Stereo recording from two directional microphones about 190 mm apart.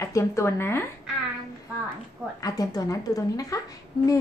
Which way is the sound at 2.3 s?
20° left (ahead or behind).